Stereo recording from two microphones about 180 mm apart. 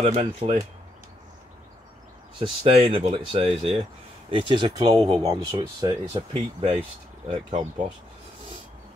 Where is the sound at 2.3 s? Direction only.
30° right (ahead or behind).